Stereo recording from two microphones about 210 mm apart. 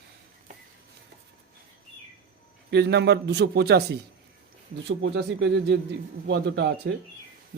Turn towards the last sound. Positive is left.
turn(degrees=-55)  # may be behind; listen again after turning